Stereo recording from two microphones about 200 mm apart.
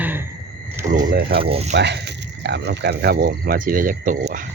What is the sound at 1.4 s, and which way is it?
Speech, 30° right (ahead or behind).